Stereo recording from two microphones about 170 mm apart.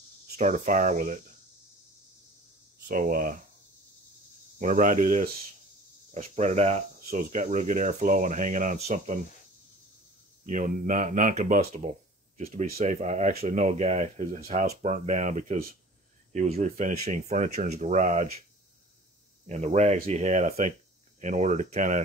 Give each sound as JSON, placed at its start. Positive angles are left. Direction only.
{"t": 0.4, "sound": "speech", "side_deg": -45}
{"t": 2.9, "sound": "speech", "side_deg": -55}
{"t": 4.6, "sound": "speech", "side_deg": -50}
{"t": 10.4, "sound": "speech", "side_deg": -50}
{"t": 19.4, "sound": "speech", "side_deg": -40}